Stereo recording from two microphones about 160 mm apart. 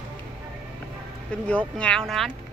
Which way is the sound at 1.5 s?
5° left (ahead or behind).